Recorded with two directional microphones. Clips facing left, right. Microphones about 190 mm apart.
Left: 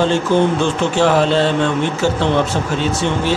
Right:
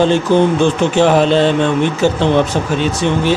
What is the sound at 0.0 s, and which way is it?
Speech, 15° right (ahead or behind).